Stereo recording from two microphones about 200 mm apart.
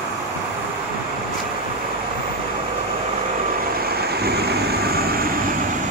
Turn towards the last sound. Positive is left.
turn(degrees=-50)  # may be behind; listen again after turning